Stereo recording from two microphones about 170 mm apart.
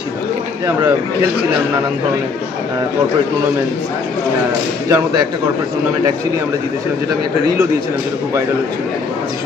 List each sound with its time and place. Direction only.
4.8 s speech: 20° right (ahead or behind)